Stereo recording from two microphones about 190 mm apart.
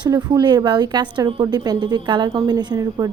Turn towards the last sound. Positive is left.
turn(degrees=-20)  # may be behind; listen again after turning